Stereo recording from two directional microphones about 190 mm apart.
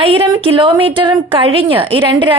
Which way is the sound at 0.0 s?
30° right (ahead or behind).